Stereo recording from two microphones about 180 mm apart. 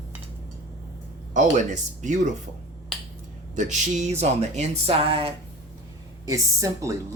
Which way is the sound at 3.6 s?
45° right (ahead or behind).